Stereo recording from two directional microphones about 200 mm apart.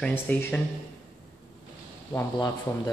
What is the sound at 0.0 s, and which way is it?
Speech, 10° left (ahead or behind).